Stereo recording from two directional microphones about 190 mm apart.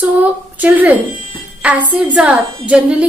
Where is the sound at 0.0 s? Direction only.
10° right (ahead or behind).